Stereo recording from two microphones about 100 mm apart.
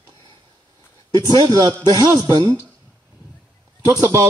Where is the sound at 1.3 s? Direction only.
40° right (ahead or behind).